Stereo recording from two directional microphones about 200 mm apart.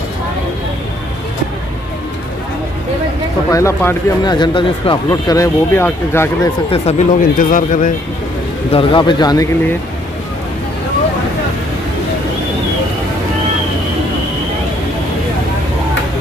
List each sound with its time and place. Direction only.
3.5 s speech: 15° left (ahead or behind)
6.7 s speech: 35° left (ahead or behind)
8.7 s speech: 25° left (ahead or behind)